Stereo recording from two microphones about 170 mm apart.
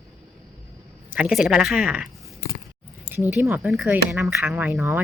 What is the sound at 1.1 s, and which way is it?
Speech, 5° right (ahead or behind).